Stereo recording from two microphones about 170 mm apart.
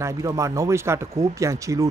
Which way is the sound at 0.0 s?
20° right (ahead or behind).